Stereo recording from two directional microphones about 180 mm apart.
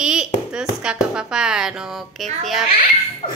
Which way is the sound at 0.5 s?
5° right (ahead or behind).